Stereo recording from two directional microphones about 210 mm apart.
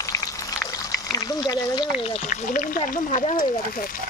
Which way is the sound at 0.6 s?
15° left (ahead or behind).